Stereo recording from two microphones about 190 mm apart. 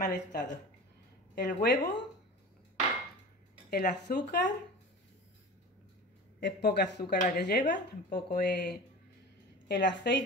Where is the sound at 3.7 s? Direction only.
55° left (ahead or behind).